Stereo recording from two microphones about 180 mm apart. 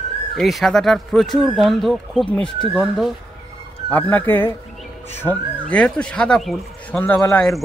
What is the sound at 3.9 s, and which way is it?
Speech, 10° left (ahead or behind).